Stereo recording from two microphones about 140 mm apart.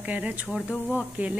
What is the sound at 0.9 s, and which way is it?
Speech, 10° right (ahead or behind).